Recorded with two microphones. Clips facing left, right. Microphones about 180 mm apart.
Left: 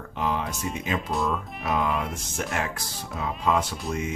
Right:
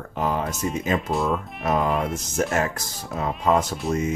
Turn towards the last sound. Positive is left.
turn(degrees=-40)  # may be behind; listen again after turning